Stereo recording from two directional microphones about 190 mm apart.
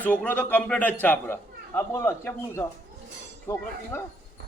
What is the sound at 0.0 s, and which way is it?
Speech, 10° left (ahead or behind).